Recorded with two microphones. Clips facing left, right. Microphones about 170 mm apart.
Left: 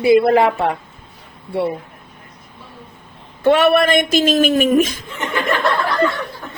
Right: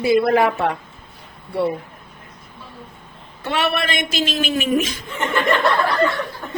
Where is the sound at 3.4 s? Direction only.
50° left (ahead or behind).